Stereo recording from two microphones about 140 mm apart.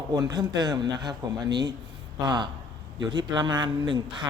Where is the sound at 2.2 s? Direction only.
30° right (ahead or behind).